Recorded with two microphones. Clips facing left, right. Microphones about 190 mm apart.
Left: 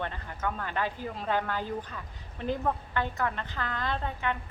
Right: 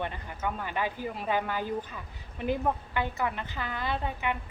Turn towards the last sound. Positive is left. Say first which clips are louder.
# right 1 dB
turn(degrees=-10)  # may be behind; listen again after turning